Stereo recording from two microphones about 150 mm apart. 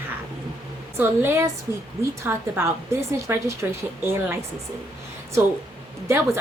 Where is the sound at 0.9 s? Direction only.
15° right (ahead or behind).